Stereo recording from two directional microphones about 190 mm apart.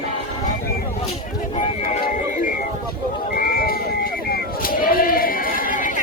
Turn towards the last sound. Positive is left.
turn(degrees=45)  # may be behind; listen again after turning